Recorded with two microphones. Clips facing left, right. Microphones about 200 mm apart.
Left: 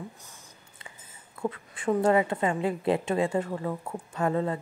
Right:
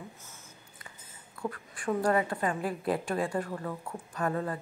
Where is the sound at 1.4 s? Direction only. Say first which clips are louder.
Left 5 dB; 20° left (ahead or behind).